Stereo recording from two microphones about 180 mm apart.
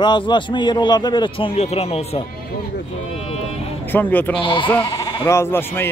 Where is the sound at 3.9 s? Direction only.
10° left (ahead or behind).